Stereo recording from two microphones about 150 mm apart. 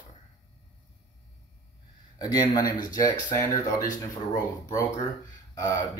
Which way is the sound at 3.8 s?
60° left (ahead or behind).